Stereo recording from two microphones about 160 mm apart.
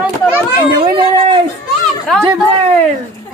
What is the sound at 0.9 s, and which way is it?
Speech, 35° right (ahead or behind).